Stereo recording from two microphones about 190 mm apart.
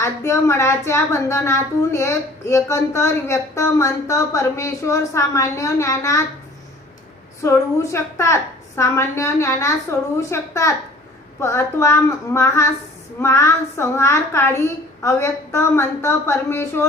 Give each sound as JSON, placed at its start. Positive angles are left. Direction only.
{"t": 0.0, "sound": "speech", "side_deg": 15}
{"t": 7.4, "sound": "speech", "side_deg": 15}